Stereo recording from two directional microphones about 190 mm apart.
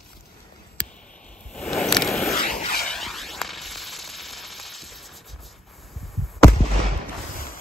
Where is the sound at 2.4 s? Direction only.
45° left (ahead or behind).